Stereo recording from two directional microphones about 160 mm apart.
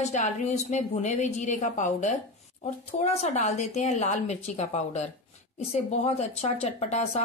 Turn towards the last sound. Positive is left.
turn(degrees=45)  # may be behind; listen again after turning